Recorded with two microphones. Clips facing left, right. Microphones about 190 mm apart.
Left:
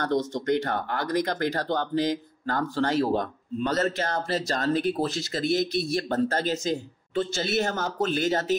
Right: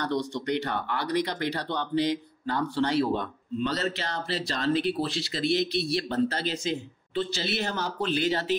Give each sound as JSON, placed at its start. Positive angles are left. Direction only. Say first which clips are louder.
{"t": 0.0, "sound": "speech", "louder": "left 3 dB", "side_deg": 45}